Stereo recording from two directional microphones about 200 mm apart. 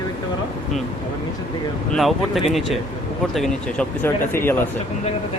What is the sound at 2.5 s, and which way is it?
Speech, centre (ahead or behind).